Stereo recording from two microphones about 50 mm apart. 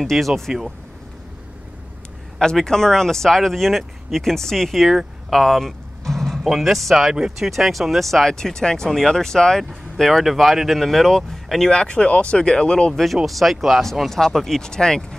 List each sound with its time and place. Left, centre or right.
0.0 s speech: centre
2.3 s speech: centre
5.3 s a sound: centre
6.5 s speech: centre
11.7 s speech: centre
12.9 s speech: centre